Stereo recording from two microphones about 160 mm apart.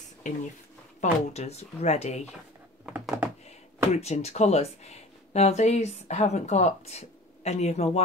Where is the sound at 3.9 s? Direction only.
45° left (ahead or behind).